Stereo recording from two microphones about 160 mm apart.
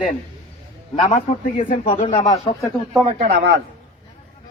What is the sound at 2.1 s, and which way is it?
Speech, 25° left (ahead or behind).